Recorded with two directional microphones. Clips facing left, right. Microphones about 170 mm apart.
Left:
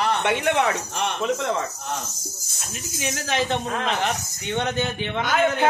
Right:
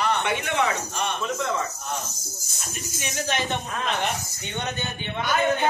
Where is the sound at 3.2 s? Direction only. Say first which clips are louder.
Left 4 dB; 90° left.